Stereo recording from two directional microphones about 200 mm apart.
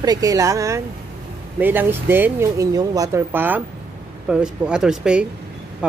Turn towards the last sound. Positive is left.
turn(degrees=-5)  # may be behind; listen again after turning